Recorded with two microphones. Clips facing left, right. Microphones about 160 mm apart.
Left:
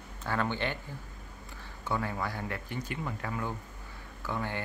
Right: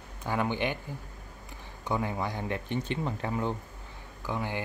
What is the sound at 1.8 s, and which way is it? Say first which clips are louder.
Speech: right 2 dB; 20° right (ahead or behind).